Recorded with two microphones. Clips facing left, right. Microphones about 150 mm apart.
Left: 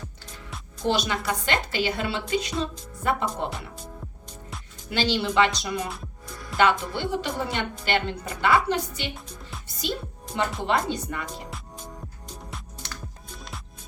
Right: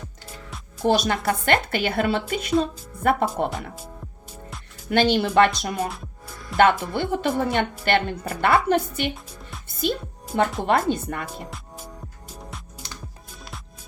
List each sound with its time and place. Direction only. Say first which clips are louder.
0.9 s a woman's voice: right 4 dB; 50° right (ahead or behind)
4.9 s a woman's voice: right 6 dB; 55° right (ahead or behind)
5.9 s music: even; centre (ahead or behind)
6.6 s a woman's voice: right 4 dB; 55° right (ahead or behind)
10.3 s music: right 6 dB; 5° right (ahead or behind)
10.6 s a woman's voice: right 4 dB; 50° right (ahead or behind)